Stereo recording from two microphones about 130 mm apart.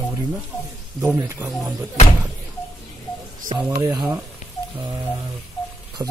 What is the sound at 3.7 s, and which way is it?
Speech, 25° right (ahead or behind).